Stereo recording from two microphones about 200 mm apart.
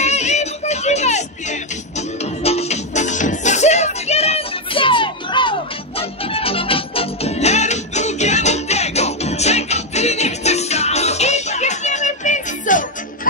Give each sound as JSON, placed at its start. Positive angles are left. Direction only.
{"t": 0.0, "sound": "music", "side_deg": 35}